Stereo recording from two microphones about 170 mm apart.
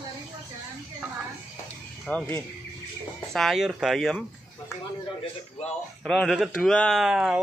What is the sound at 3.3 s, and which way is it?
Speech, centre (ahead or behind).